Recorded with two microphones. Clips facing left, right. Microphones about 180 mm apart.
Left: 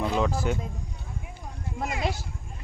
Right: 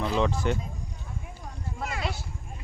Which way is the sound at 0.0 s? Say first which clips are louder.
Even; 5° left (ahead or behind).